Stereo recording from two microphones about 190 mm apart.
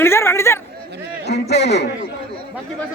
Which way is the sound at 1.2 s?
60° left (ahead or behind).